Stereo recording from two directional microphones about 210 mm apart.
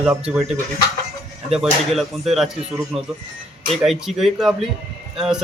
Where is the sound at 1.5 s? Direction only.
Centre (ahead or behind).